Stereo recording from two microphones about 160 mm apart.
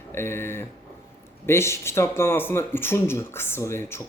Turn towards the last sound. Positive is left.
turn(degrees=15)  # may be behind; listen again after turning